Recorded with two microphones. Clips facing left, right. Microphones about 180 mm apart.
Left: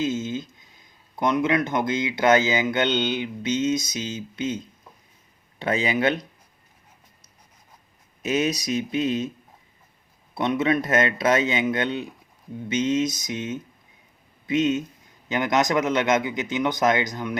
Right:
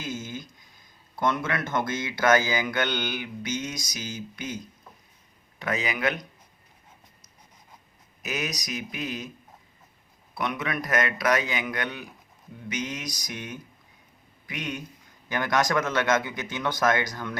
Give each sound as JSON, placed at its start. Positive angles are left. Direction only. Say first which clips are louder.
{"t": 0.0, "sound": "speech", "louder": "left 9 dB", "side_deg": 25}
{"t": 8.2, "sound": "speech", "louder": "left 9 dB", "side_deg": 25}
{"t": 10.3, "sound": "speech", "louder": "left 8 dB", "side_deg": 25}